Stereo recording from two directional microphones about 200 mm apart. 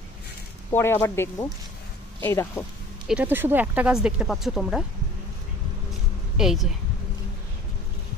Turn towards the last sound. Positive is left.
turn(degrees=0)  # may be behind; listen again after turning